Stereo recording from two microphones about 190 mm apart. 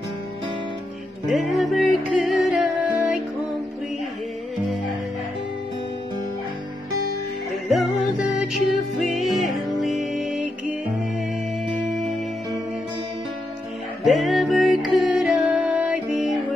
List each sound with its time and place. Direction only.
1.3 s music: centre (ahead or behind)
7.6 s music: centre (ahead or behind)
8.9 s music: centre (ahead or behind)
14.0 s music: centre (ahead or behind)